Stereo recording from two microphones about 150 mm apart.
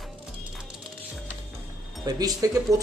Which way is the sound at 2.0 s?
25° right (ahead or behind).